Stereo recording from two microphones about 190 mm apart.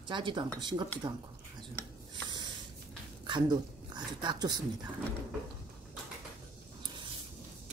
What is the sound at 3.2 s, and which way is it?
Speech, 25° right (ahead or behind).